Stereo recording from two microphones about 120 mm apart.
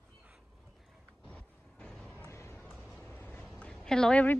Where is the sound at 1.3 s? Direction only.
10° left (ahead or behind).